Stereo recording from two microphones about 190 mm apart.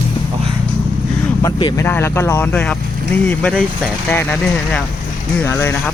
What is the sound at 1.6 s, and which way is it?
Speech, 25° left (ahead or behind).